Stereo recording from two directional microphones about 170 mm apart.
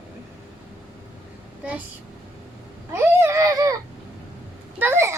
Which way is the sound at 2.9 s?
15° right (ahead or behind).